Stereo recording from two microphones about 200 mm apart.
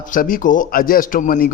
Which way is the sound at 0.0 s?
45° left (ahead or behind).